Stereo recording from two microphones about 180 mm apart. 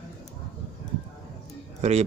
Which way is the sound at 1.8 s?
35° right (ahead or behind).